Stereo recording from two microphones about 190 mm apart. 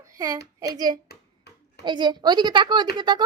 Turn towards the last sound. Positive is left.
turn(degrees=-25)  # may be behind; listen again after turning